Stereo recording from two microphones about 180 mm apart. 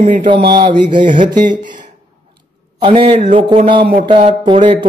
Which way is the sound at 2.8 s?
30° right (ahead or behind).